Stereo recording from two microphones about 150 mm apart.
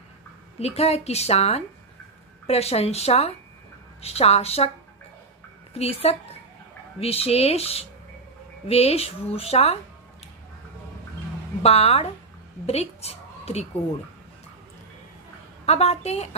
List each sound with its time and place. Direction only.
0.6 s a woman's voice: 45° left (ahead or behind)
5.8 s a woman's voice: 40° left (ahead or behind)
11.6 s a woman's voice: 45° left (ahead or behind)
15.6 s a woman's voice: 45° left (ahead or behind)